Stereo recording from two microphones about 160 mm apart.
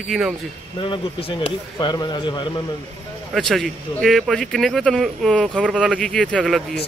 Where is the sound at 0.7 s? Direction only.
30° left (ahead or behind).